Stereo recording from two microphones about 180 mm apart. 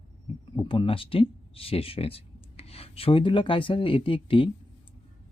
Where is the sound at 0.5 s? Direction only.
30° left (ahead or behind).